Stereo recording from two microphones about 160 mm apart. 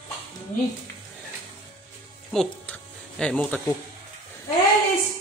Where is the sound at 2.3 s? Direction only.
5° left (ahead or behind).